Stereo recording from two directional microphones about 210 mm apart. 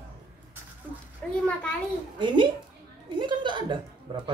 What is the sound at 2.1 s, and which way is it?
Speech, 20° right (ahead or behind).